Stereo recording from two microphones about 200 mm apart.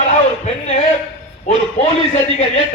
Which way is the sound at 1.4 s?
30° left (ahead or behind).